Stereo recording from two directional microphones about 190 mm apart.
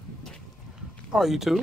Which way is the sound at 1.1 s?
Centre (ahead or behind).